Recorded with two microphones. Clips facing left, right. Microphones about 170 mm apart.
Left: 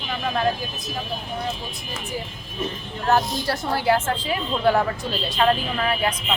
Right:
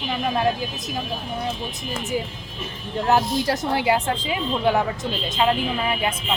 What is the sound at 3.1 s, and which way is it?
A woman's voice, 15° right (ahead or behind).